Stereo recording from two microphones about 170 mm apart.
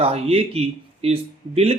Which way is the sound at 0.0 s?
35° right (ahead or behind).